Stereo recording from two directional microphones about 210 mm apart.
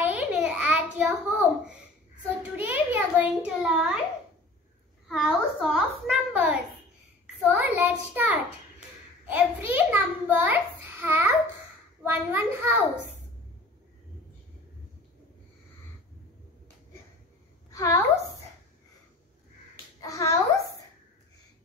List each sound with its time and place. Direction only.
0.0 s a sound: 5° right (ahead or behind)
0.9 s a child's voice: 5° right (ahead or behind)
5.0 s a child's voice: centre (ahead or behind)
17.6 s a woman's voice: 15° left (ahead or behind)
20.0 s a child's voice: 15° left (ahead or behind)